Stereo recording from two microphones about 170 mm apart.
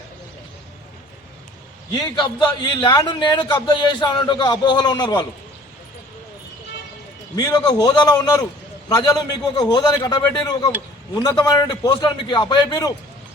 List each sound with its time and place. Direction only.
1.9 s a man's voice: 25° left (ahead or behind)
7.3 s a man's voice: 25° left (ahead or behind)